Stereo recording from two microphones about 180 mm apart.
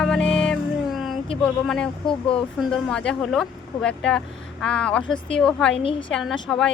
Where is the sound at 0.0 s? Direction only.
5° left (ahead or behind).